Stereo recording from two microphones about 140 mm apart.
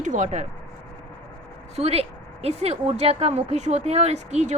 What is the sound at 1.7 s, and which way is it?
A woman's voice, 45° right (ahead or behind).